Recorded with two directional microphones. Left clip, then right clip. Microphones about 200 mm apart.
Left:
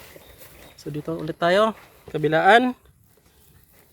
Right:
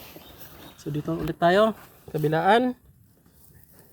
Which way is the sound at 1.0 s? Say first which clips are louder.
Even; 35° left (ahead or behind).